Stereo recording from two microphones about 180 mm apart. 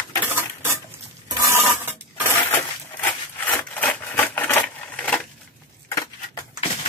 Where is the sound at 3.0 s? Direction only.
10° left (ahead or behind).